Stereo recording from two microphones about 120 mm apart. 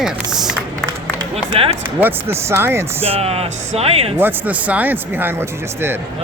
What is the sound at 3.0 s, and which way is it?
Speech, 55° right (ahead or behind).